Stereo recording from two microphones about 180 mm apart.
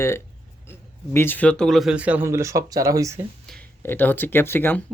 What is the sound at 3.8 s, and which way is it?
Speech, 10° left (ahead or behind).